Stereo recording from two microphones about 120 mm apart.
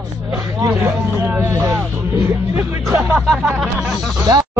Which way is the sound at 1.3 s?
15° right (ahead or behind).